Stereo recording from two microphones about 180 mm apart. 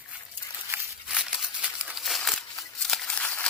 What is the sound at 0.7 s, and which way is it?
Crumpling, 5° right (ahead or behind).